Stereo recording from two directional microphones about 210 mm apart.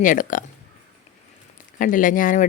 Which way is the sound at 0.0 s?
40° left (ahead or behind).